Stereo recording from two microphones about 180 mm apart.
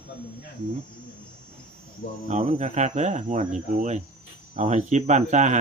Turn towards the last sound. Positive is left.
turn(degrees=-40)  # may be behind; listen again after turning